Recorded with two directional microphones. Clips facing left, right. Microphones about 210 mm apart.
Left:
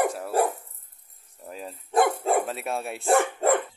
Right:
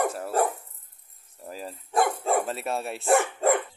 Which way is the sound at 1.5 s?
Centre (ahead or behind).